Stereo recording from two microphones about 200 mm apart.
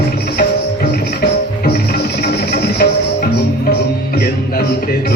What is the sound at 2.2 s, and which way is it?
Cricket, 50° left (ahead or behind).